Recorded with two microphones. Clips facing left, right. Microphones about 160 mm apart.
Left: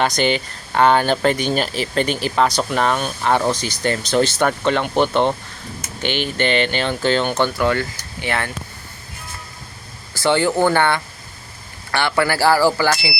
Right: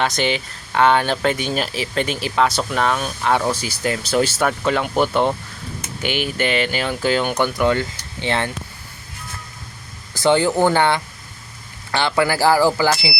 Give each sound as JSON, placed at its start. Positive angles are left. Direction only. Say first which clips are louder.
{"t": 0.0, "sound": "speech", "louder": "left 2 dB", "side_deg": 0}
{"t": 10.2, "sound": "speech", "louder": "right 1 dB", "side_deg": -15}